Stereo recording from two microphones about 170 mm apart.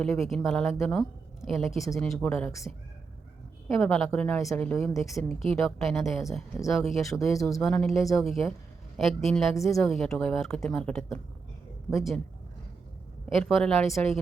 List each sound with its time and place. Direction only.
0.0 s a woman's voice: centre (ahead or behind)
3.8 s a woman's voice: 5° left (ahead or behind)
7.3 s speech: 20° left (ahead or behind)
7.6 s a woman's voice: 5° left (ahead or behind)
13.4 s a woman's voice: 5° left (ahead or behind)